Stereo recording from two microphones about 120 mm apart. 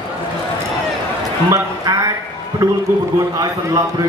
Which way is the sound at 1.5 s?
25° right (ahead or behind).